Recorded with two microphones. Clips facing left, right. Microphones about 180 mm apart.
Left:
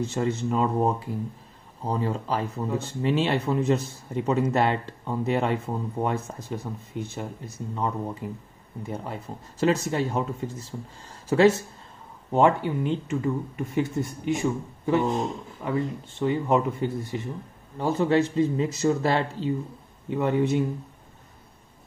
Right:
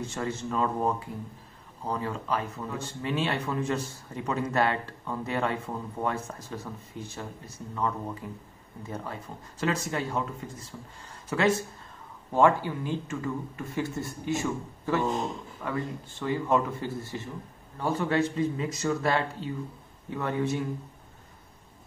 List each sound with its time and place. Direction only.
0.0 s speech: 25° left (ahead or behind)